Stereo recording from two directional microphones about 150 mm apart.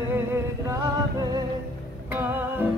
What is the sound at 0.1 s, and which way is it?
Music, 15° right (ahead or behind).